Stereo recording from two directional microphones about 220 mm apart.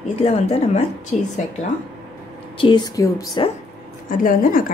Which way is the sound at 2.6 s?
20° left (ahead or behind).